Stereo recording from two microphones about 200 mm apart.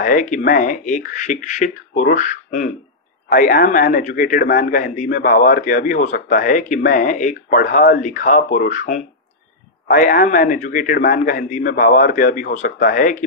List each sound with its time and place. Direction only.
0.0 s a man's voice: 40° left (ahead or behind)